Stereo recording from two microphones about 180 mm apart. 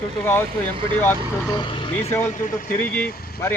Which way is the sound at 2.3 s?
50° left (ahead or behind).